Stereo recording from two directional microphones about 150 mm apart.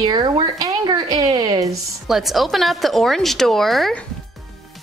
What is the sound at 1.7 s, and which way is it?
A woman's voice, centre (ahead or behind).